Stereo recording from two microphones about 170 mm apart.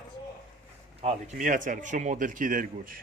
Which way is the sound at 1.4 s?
50° right (ahead or behind).